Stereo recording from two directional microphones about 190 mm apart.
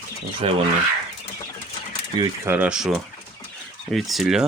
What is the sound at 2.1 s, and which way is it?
Speech, 15° right (ahead or behind).